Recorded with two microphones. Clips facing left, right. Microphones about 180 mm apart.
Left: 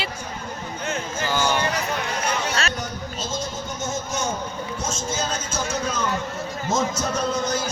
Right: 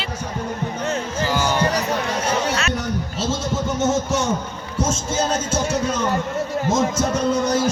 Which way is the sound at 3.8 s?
75° right (ahead or behind).